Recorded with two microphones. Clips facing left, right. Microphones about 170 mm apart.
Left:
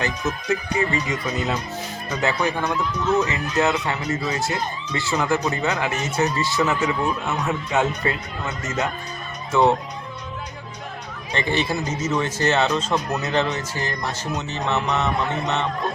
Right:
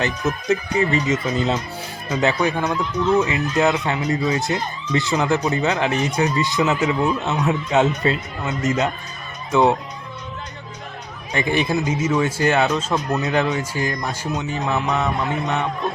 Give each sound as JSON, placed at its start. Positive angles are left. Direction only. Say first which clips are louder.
{"t": 0.0, "sound": "speech", "louder": "right 3 dB", "side_deg": -20}
{"t": 11.3, "sound": "speech", "louder": "right 3 dB", "side_deg": -15}